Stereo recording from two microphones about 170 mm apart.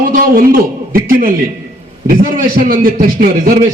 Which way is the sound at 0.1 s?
55° right (ahead or behind).